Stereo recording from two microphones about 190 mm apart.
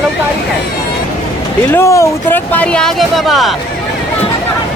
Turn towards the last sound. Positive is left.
turn(degrees=0)  # may be behind; listen again after turning